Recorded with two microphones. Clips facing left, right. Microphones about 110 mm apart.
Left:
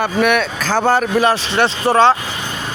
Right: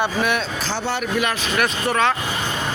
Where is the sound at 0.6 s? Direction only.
45° left (ahead or behind).